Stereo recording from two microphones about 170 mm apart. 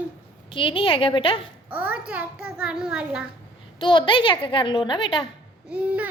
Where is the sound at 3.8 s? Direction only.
30° left (ahead or behind).